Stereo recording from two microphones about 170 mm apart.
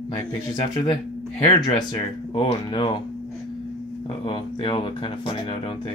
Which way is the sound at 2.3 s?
30° left (ahead or behind).